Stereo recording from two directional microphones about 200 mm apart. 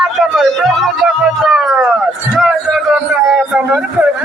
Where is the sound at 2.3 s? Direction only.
Centre (ahead or behind).